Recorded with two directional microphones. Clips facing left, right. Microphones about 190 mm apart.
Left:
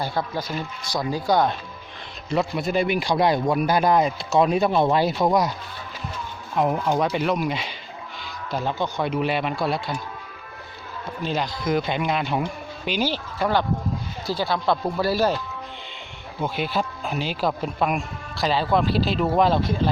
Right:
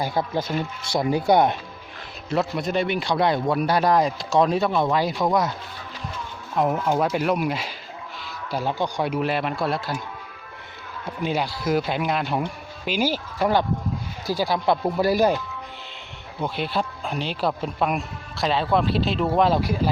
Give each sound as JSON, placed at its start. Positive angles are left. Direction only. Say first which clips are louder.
{"t": 0.0, "sound": "speech", "louder": "right 2 dB", "side_deg": -20}
{"t": 2.3, "sound": "a man's voice", "louder": "left 1 dB", "side_deg": 0}
{"t": 6.8, "sound": "speech", "louder": "even", "side_deg": -5}
{"t": 11.2, "sound": "speech", "louder": "right 1 dB", "side_deg": -10}
{"t": 16.4, "sound": "speech", "louder": "left 1 dB", "side_deg": 5}